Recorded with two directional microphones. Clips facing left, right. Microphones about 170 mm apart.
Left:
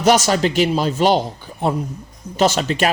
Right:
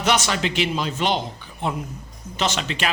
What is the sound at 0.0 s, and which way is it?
Speech, 40° left (ahead or behind).